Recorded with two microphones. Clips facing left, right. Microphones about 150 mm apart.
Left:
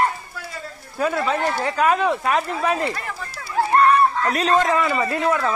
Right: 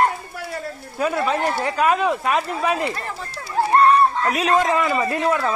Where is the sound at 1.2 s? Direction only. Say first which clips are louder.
Right 1 dB; 10° right (ahead or behind).